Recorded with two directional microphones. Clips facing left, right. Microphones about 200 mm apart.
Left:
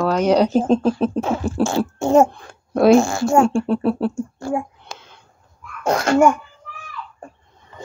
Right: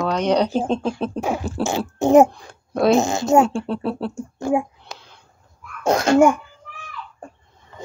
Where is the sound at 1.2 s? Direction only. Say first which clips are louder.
Left 3 dB; 15° right (ahead or behind).